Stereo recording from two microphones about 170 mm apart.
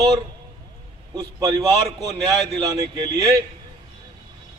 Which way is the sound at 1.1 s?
25° right (ahead or behind).